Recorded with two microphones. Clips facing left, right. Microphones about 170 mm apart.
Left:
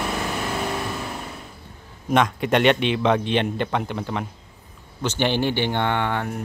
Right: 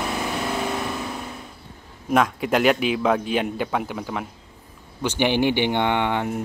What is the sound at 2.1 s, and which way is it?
A man's voice, 5° right (ahead or behind).